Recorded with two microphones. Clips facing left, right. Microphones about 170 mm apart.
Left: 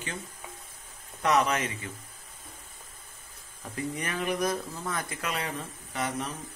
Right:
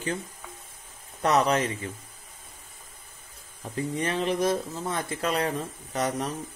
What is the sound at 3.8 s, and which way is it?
Speech, 30° right (ahead or behind).